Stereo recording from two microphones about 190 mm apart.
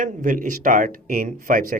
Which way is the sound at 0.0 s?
45° right (ahead or behind).